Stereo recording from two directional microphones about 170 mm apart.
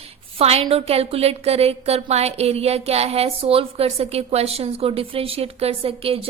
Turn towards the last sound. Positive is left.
turn(degrees=-35)  # may be behind; listen again after turning